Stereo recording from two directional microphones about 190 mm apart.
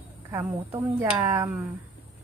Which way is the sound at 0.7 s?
15° right (ahead or behind).